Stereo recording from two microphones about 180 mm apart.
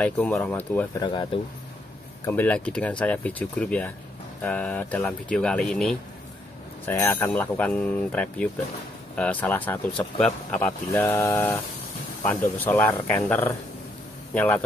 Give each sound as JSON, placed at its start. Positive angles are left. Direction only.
{"t": 0.0, "sound": "speech", "side_deg": 5}
{"t": 1.0, "sound": "speech", "side_deg": 25}
{"t": 2.2, "sound": "speech", "side_deg": 10}